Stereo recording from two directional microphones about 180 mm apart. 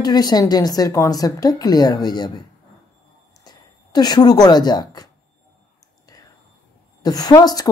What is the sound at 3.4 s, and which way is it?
Speech, 20° left (ahead or behind).